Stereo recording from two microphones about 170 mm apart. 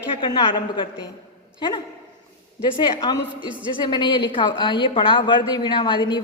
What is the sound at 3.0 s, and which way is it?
A woman's voice, 25° left (ahead or behind).